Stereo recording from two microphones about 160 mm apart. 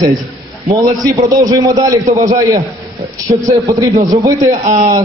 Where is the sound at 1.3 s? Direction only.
25° right (ahead or behind).